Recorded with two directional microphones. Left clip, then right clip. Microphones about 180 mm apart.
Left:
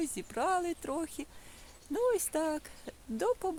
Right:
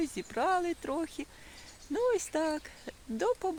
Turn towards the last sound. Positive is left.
turn(degrees=-5)  # may be behind; listen again after turning